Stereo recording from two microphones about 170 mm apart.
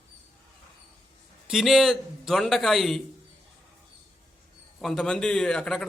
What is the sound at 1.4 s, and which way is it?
A man's voice, centre (ahead or behind).